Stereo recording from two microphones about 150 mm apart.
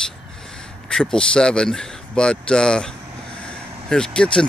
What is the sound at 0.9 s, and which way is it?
Speech, 5° left (ahead or behind).